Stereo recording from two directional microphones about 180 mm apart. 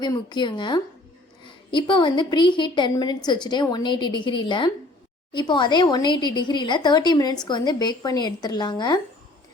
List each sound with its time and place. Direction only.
0.0 s speech: 25° left (ahead or behind)